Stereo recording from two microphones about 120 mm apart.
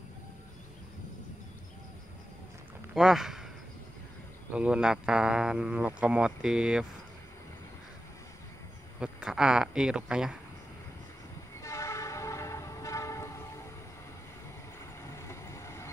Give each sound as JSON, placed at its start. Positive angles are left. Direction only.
{"t": 2.9, "sound": "speech", "side_deg": -5}
{"t": 4.5, "sound": "speech", "side_deg": -10}
{"t": 9.0, "sound": "speech", "side_deg": -5}
{"t": 11.6, "sound": "train", "side_deg": 25}
{"t": 15.0, "sound": "vehicle", "side_deg": 25}